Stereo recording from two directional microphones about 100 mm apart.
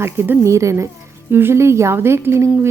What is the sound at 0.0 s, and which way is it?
Speech, 25° right (ahead or behind).